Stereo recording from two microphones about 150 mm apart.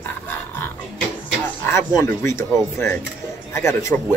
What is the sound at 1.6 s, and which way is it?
Speech, 20° left (ahead or behind).